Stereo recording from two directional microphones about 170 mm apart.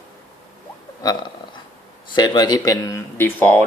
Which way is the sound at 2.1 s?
25° left (ahead or behind).